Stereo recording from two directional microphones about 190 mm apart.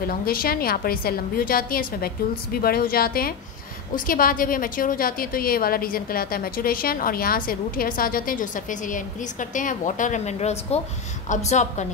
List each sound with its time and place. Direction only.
0.0 s a woman's voice: 50° left (ahead or behind)